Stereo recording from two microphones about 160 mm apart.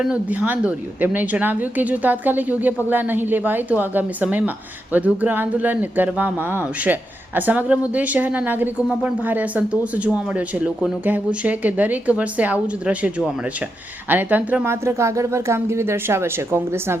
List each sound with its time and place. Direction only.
0.0 s a woman's voice: 10° right (ahead or behind)